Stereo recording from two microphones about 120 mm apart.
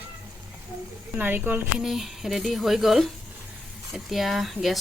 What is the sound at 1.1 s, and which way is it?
Speech, 15° right (ahead or behind).